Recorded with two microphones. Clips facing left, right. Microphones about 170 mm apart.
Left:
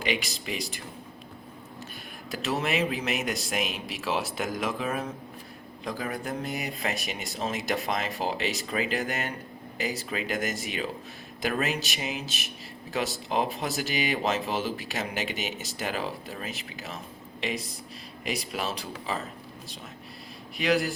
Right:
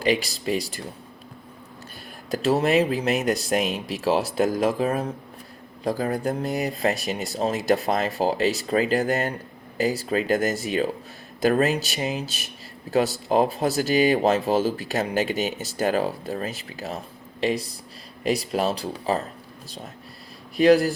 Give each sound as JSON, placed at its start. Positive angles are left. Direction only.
{"t": 0.0, "sound": "speech", "side_deg": -35}
{"t": 2.3, "sound": "speech", "side_deg": -35}
{"t": 20.6, "sound": "speech", "side_deg": -35}